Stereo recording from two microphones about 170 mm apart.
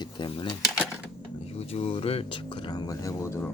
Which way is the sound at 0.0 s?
30° left (ahead or behind).